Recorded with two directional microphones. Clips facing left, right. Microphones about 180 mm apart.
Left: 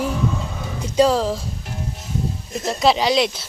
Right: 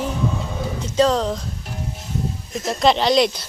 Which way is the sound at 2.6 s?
5° left (ahead or behind).